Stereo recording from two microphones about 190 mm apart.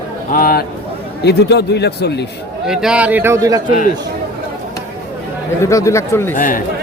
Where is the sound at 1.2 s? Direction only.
60° left (ahead or behind).